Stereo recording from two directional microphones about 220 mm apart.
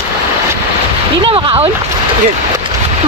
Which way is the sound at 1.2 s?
25° right (ahead or behind).